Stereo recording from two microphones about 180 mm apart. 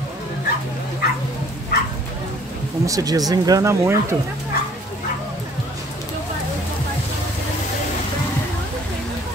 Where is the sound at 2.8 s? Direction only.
20° right (ahead or behind).